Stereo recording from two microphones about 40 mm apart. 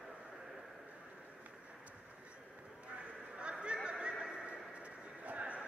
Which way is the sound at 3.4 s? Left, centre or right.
Right.